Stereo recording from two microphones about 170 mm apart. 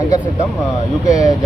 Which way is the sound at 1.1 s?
20° left (ahead or behind).